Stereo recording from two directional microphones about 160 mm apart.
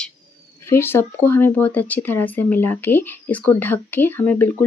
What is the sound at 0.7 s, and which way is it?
Speech, 15° left (ahead or behind).